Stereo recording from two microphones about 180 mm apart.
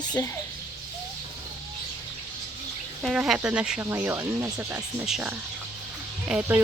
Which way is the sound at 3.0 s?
5° right (ahead or behind).